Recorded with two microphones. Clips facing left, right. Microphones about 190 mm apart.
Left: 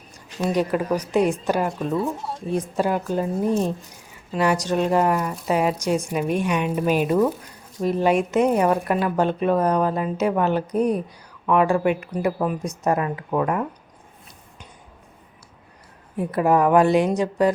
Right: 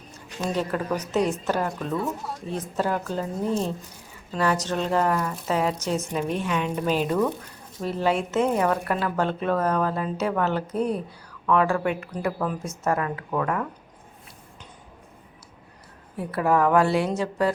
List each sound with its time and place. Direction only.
0.1 s a sound: 15° left (ahead or behind)
0.9 s speech: 10° left (ahead or behind)
16.1 s speech: 20° left (ahead or behind)